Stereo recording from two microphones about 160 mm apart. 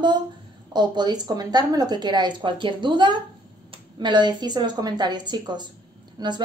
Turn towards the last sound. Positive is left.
turn(degrees=-25)  # may be behind; listen again after turning